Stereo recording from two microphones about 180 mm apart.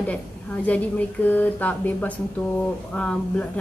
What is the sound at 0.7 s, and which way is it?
A woman's voice, 10° left (ahead or behind).